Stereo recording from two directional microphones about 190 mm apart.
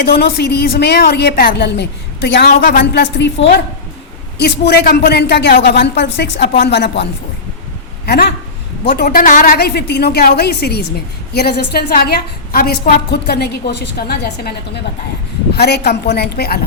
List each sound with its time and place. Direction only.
0.0 s a woman's voice: 55° left (ahead or behind)
15.5 s a woman's voice: 60° left (ahead or behind)